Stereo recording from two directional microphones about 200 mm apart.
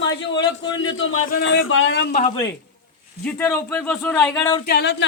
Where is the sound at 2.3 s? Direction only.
15° left (ahead or behind).